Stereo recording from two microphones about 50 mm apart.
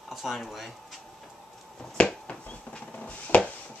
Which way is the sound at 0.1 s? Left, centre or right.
Centre.